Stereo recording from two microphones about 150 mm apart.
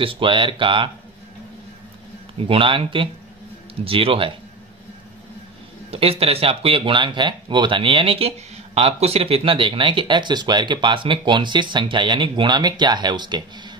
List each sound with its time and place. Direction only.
0.0 s speech: 35° right (ahead or behind)
2.3 s speech: 40° right (ahead or behind)
5.9 s speech: 40° right (ahead or behind)